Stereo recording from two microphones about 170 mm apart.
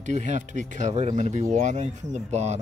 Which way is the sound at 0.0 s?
45° right (ahead or behind).